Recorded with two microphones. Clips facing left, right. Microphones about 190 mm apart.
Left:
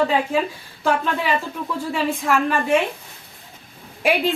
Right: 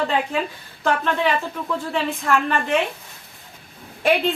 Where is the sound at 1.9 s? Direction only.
10° left (ahead or behind).